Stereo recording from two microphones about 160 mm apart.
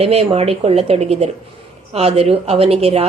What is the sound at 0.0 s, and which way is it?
A woman's voice, 40° right (ahead or behind).